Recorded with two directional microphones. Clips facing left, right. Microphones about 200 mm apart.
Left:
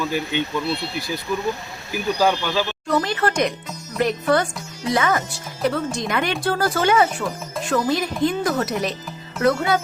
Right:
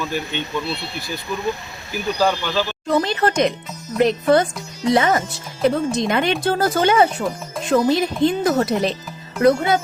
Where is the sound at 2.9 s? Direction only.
25° right (ahead or behind).